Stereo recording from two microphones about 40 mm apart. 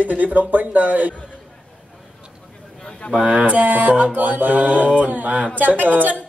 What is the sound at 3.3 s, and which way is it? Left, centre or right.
Speech, right.